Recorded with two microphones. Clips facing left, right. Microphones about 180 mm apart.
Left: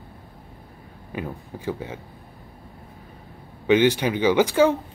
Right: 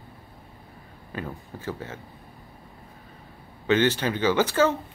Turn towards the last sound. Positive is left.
turn(degrees=15)  # may be behind; listen again after turning